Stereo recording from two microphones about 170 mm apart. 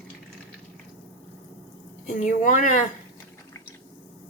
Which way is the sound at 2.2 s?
45° left (ahead or behind).